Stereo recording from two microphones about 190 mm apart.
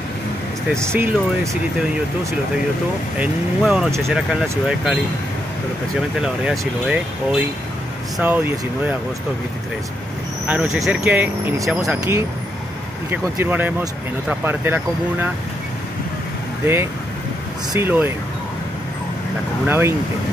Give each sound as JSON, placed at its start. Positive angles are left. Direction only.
{"t": 0.7, "sound": "speech", "side_deg": -15}
{"t": 3.2, "sound": "speech", "side_deg": -5}
{"t": 5.9, "sound": "speech", "side_deg": -5}
{"t": 10.4, "sound": "speech", "side_deg": -5}
{"t": 12.0, "sound": "speech", "side_deg": -15}
{"t": 17.7, "sound": "speech", "side_deg": -10}
{"t": 19.6, "sound": "speech", "side_deg": -10}